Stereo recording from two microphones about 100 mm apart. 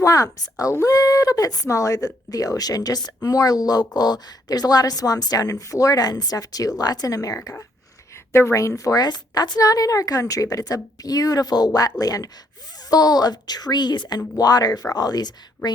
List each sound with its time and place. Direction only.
0.0 s speech: 35° left (ahead or behind)